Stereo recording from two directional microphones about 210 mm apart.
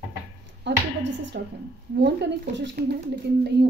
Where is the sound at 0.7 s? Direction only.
55° right (ahead or behind).